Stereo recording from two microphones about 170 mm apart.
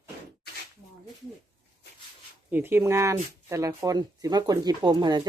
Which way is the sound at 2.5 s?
15° right (ahead or behind).